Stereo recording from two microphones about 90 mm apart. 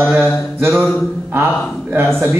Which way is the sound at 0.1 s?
25° right (ahead or behind).